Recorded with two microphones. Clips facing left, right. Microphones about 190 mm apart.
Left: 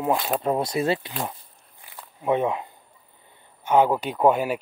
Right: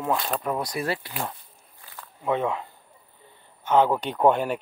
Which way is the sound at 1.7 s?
15° left (ahead or behind).